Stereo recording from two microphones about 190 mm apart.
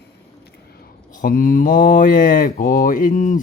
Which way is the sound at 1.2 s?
45° left (ahead or behind).